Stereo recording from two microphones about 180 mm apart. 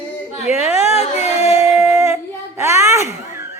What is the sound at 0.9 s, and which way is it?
Music, 40° left (ahead or behind).